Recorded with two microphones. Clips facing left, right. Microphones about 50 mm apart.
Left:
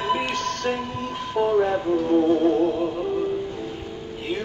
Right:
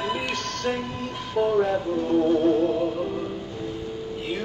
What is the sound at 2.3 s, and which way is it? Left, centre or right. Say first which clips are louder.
Music: left 1 dB; centre.